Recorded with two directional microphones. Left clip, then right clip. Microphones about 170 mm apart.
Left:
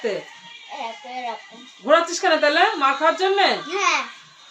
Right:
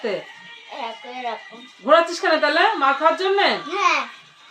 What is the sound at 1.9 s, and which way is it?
A woman's voice, 20° left (ahead or behind).